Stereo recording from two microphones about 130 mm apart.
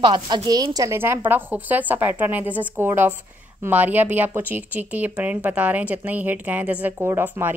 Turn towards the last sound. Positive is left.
turn(degrees=-20)  # may be behind; listen again after turning